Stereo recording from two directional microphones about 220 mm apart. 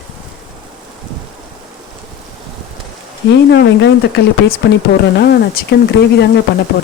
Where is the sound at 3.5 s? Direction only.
50° left (ahead or behind).